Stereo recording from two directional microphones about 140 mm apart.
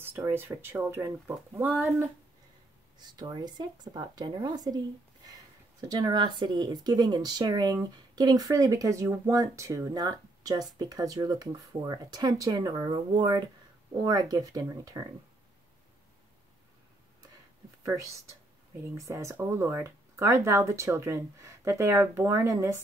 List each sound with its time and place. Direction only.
0.0 s speech: 15° right (ahead or behind)
3.0 s speech: 30° right (ahead or behind)
5.8 s speech: 30° right (ahead or behind)
18.9 s speech: 20° right (ahead or behind)